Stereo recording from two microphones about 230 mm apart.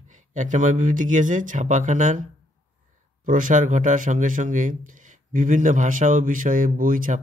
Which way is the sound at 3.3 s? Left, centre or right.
Right.